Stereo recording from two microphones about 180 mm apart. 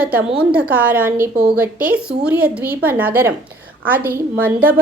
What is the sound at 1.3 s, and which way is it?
Speech, 60° right (ahead or behind).